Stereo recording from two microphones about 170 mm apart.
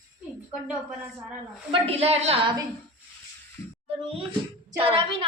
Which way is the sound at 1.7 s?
35° right (ahead or behind).